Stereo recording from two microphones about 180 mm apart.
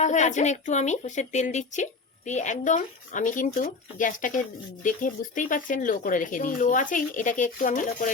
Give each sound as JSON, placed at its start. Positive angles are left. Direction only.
{"t": 0.0, "sound": "speech", "side_deg": 40}